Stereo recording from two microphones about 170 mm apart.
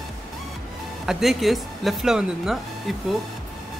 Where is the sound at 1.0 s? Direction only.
Centre (ahead or behind).